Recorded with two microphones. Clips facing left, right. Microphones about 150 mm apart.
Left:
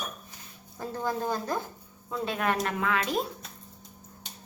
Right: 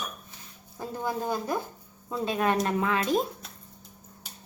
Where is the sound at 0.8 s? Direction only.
15° right (ahead or behind).